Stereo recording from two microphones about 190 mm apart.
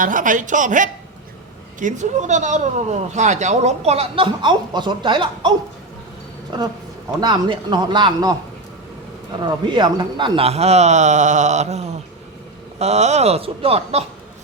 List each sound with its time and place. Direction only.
0.0 s speech: 45° right (ahead or behind); by 5.5 s 25° right (ahead or behind)
6.5 s a man's voice: 25° right (ahead or behind)
9.4 s speech: 25° right (ahead or behind)
12.8 s speech: 35° right (ahead or behind)